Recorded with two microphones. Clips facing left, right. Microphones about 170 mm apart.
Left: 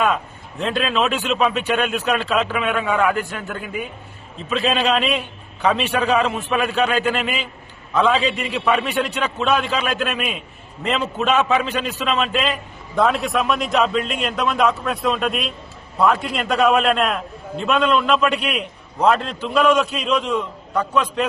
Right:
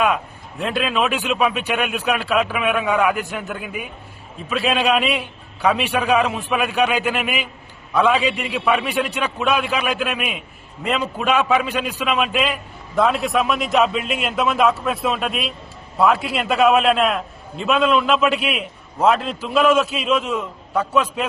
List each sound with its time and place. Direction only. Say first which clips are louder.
0.6 s a man's voice: even; 10° right (ahead or behind)